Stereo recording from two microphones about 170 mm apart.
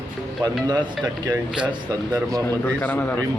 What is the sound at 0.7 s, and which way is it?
Speech, 25° right (ahead or behind).